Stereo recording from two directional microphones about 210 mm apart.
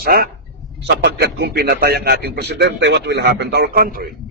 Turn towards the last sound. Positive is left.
turn(degrees=-45)  # may be behind; listen again after turning